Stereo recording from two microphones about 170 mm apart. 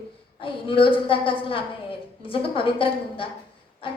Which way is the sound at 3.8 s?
30° left (ahead or behind).